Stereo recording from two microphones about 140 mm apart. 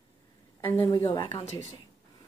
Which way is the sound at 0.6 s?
15° left (ahead or behind).